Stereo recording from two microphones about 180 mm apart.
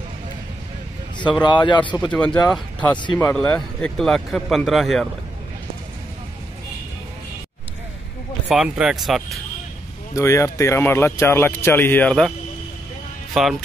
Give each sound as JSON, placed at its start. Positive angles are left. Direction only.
{"t": 1.4, "sound": "a man's voice", "side_deg": 25}
{"t": 2.0, "sound": "speech", "side_deg": 5}
{"t": 8.5, "sound": "speech", "side_deg": -5}
{"t": 10.1, "sound": "speech", "side_deg": 15}
{"t": 13.3, "sound": "speech", "side_deg": 0}